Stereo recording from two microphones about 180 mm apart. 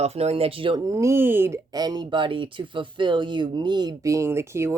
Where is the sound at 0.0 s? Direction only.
35° right (ahead or behind).